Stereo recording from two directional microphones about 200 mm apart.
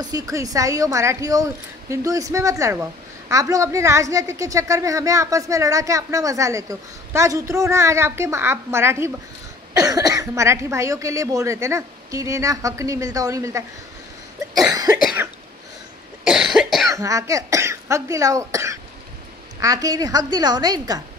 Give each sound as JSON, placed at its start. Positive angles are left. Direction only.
{"t": 0.0, "sound": "a woman's voice", "side_deg": -15}
{"t": 14.7, "sound": "cough", "side_deg": -15}
{"t": 16.3, "sound": "cough", "side_deg": 0}
{"t": 16.9, "sound": "a woman's voice", "side_deg": -15}